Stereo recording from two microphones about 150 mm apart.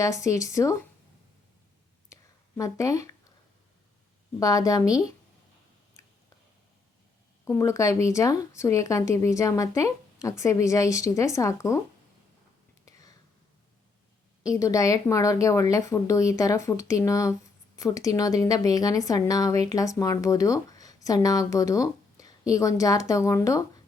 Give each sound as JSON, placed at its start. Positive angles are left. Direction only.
{"t": 0.0, "sound": "a woman's voice", "side_deg": 20}
{"t": 2.6, "sound": "a woman's voice", "side_deg": 20}
{"t": 4.4, "sound": "a woman's voice", "side_deg": 25}
{"t": 7.4, "sound": "a woman's voice", "side_deg": 20}
{"t": 12.8, "sound": "whispering", "side_deg": 25}
{"t": 14.4, "sound": "a woman's voice", "side_deg": 20}